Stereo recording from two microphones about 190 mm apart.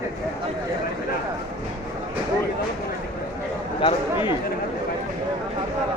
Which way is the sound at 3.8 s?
25° left (ahead or behind).